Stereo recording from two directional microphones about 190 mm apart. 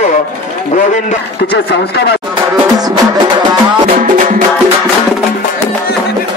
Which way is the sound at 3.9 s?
45° right (ahead or behind).